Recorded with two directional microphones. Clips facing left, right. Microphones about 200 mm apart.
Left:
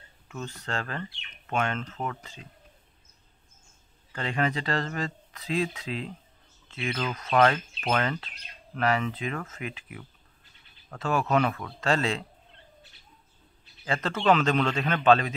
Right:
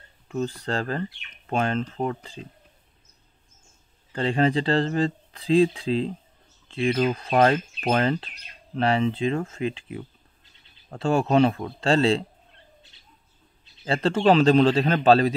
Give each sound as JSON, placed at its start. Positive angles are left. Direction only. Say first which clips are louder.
{"t": 0.3, "sound": "speech", "louder": "right 8 dB", "side_deg": -35}
{"t": 4.1, "sound": "speech", "louder": "right 7 dB", "side_deg": -30}
{"t": 13.8, "sound": "speech", "louder": "right 5 dB", "side_deg": -30}